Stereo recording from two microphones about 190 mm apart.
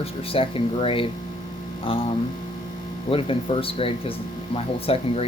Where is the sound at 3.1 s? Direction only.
30° left (ahead or behind).